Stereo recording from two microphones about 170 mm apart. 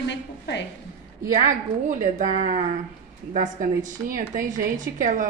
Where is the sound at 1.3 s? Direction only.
45° right (ahead or behind).